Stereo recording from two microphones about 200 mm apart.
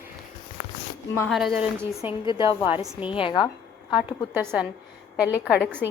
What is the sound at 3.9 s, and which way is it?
A woman's voice, 5° right (ahead or behind).